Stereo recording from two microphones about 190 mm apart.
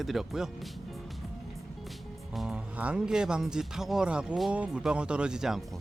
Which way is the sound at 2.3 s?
5° right (ahead or behind).